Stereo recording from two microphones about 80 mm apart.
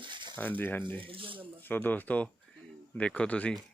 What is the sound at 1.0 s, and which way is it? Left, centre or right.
Speech, right.